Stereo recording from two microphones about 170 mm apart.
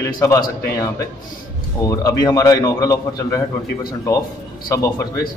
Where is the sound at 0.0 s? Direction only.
20° left (ahead or behind).